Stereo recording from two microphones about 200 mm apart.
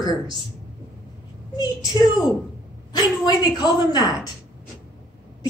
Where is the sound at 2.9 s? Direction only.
20° left (ahead or behind).